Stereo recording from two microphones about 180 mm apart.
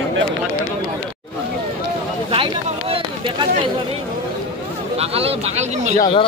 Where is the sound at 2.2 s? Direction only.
30° right (ahead or behind).